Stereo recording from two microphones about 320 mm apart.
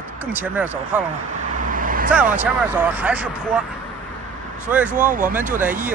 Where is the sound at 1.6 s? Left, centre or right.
Right.